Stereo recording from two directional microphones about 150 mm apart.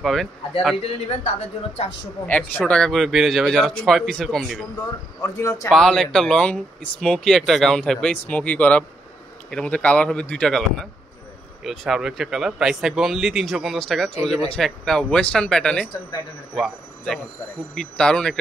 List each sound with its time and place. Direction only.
0.0 s speech: centre (ahead or behind)
2.2 s speech: 10° left (ahead or behind)
5.2 s speech: 20° left (ahead or behind)
5.7 s a man's voice: 5° left (ahead or behind)